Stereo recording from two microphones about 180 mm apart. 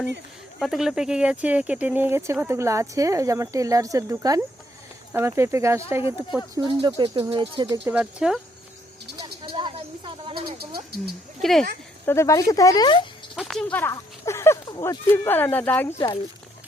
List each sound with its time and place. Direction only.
0.6 s speech: centre (ahead or behind)
6.8 s speech: 25° right (ahead or behind)
7.9 s speech: 5° right (ahead or behind)
9.1 s a sound: 25° right (ahead or behind)
10.6 s speech: 60° right (ahead or behind)
11.3 s speech: centre (ahead or behind)
12.0 s speech: 15° left (ahead or behind)
13.3 s speech: centre (ahead or behind)